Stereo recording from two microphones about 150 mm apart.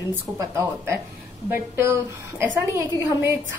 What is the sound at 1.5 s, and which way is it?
A woman's voice, 15° right (ahead or behind).